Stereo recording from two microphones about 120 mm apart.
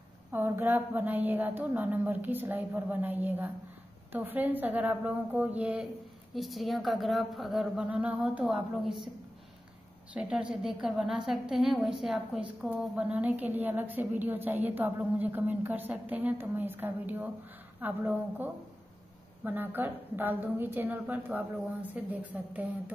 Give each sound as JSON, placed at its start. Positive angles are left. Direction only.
{"t": 0.3, "sound": "a woman's voice", "side_deg": -20}
{"t": 6.3, "sound": "a woman's voice", "side_deg": 0}
{"t": 10.1, "sound": "a woman's voice", "side_deg": -5}